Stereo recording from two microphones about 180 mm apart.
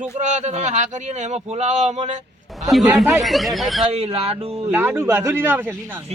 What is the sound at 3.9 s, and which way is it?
Speech, 35° right (ahead or behind).